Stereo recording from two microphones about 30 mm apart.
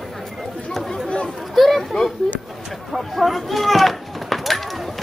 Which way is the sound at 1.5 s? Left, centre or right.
Centre.